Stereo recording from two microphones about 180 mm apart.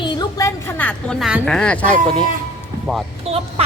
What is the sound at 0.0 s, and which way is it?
A woman's voice, 20° left (ahead or behind).